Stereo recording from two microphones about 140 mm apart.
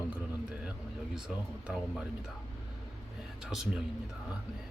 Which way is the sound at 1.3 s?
Centre (ahead or behind).